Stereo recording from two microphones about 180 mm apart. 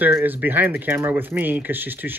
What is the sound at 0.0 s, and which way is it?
Speech, 10° right (ahead or behind).